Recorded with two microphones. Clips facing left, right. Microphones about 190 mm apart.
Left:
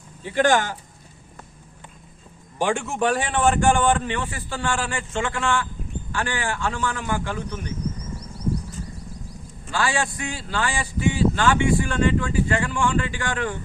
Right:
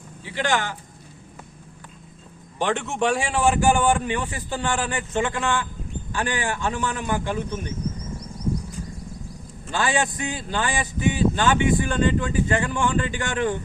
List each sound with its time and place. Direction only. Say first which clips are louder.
0.2 s speech: left 5 dB; 50° left (ahead or behind)
2.6 s a man's voice: left 1 dB; 10° left (ahead or behind); by 7.6 s 20° right (ahead or behind)
9.7 s a man's voice: right 1 dB; 20° right (ahead or behind)